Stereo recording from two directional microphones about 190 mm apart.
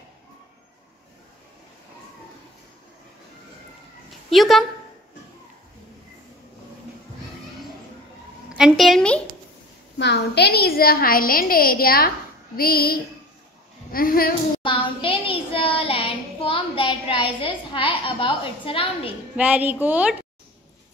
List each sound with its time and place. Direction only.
4.3 s a woman's voice: centre (ahead or behind)
8.5 s a sound: 5° right (ahead or behind)
9.9 s a woman's voice: 65° left (ahead or behind)
14.6 s child singing: 25° left (ahead or behind)
19.3 s a woman's voice: 10° right (ahead or behind)